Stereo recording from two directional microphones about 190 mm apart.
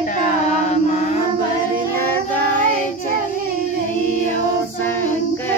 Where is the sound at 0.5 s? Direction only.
35° left (ahead or behind).